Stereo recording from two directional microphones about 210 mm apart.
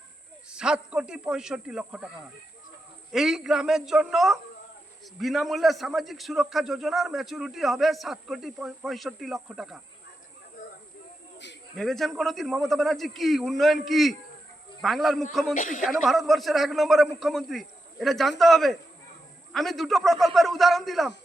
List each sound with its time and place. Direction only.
0.5 s a man's voice: 5° right (ahead or behind)
3.1 s a man's voice: centre (ahead or behind)
11.8 s a man's voice: centre (ahead or behind)
15.5 s speech: 40° left (ahead or behind)
15.8 s a man's voice: centre (ahead or behind)